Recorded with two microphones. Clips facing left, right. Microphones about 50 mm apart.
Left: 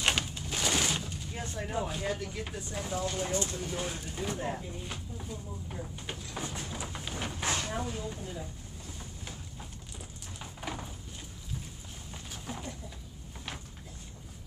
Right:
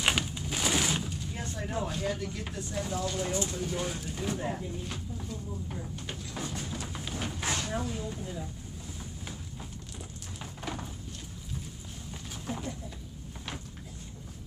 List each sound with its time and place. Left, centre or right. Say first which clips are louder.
0.0 s a sound: right 1 dB; centre
1.4 s speech: even; centre
3.0 s speech: left 1 dB; centre
3.3 s speech: right 1 dB; centre
3.5 s speech: right 2 dB; centre
5.9 s a sound: right 1 dB; centre
12.4 s bird: right 4 dB; centre